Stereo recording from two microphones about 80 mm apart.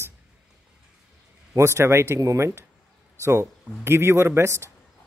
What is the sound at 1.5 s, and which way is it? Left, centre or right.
Speech, right.